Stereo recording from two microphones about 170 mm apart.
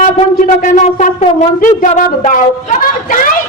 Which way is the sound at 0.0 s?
45° left (ahead or behind).